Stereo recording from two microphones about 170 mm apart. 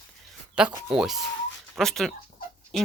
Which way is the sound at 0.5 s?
5° right (ahead or behind).